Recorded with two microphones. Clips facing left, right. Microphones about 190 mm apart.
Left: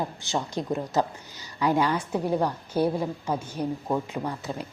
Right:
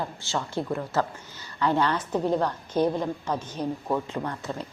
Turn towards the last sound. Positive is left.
turn(degrees=10)  # may be behind; listen again after turning